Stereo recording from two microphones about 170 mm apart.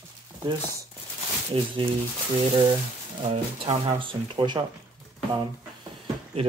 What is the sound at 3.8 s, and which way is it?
Speech, 25° right (ahead or behind).